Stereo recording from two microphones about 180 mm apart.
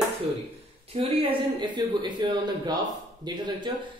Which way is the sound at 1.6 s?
25° right (ahead or behind).